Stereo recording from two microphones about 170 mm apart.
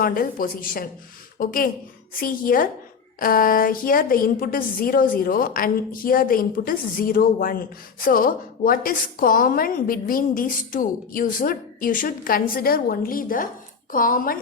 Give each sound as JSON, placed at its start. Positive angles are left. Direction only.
{"t": 0.0, "sound": "a woman's voice", "side_deg": 55}